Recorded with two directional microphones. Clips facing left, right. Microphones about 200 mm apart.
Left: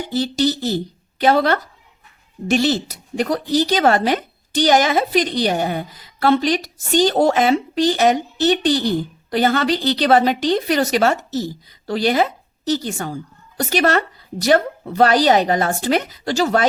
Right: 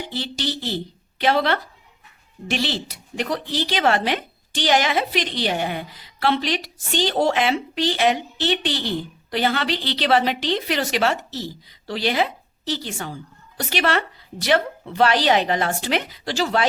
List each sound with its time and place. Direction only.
0.0 s speech: 40° left (ahead or behind)